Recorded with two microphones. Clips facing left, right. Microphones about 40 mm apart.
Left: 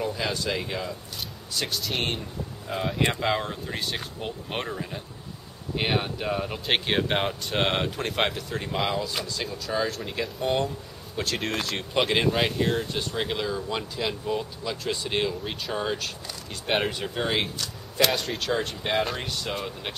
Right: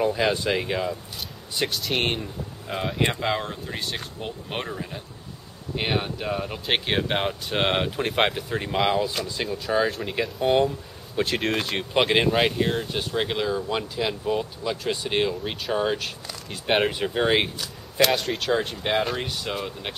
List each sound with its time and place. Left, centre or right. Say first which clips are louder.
0.0 s speech: right 6 dB; right
1.7 s speech: right 2 dB; centre; by 17.5 s right
18.0 s speech: right 3 dB; centre